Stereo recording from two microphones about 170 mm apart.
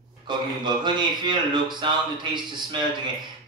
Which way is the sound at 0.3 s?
25° right (ahead or behind).